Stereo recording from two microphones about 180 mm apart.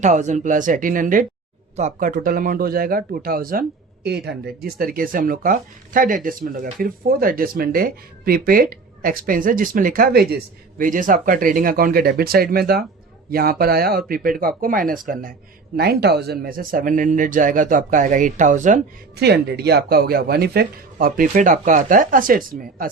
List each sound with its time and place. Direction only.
0.0 s speech: 40° right (ahead or behind)
19.1 s speech: 65° right (ahead or behind)